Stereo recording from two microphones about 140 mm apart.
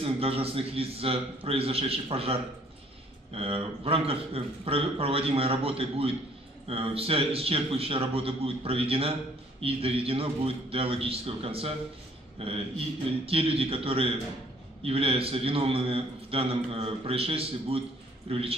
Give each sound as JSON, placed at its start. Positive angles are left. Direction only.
{"t": 0.0, "sound": "a man's voice", "side_deg": -45}
{"t": 3.3, "sound": "a man's voice", "side_deg": -45}